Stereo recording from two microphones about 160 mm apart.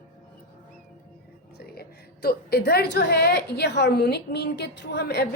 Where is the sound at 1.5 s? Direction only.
75° left (ahead or behind).